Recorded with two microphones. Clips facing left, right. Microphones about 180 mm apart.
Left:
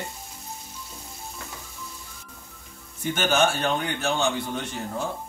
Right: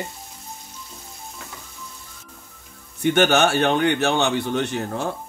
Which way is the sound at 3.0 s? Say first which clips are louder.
Right 5 dB; 70° right (ahead or behind).